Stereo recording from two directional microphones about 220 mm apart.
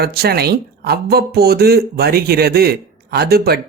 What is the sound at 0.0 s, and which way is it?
Speech, 45° right (ahead or behind).